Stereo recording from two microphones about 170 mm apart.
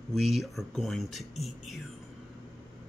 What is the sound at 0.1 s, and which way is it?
Speech, centre (ahead or behind).